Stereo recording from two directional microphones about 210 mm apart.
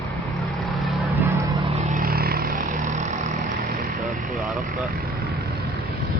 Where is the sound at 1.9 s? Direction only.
45° right (ahead or behind).